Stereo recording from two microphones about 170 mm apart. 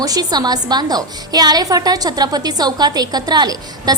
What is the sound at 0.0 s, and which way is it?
A woman's voice, 20° right (ahead or behind).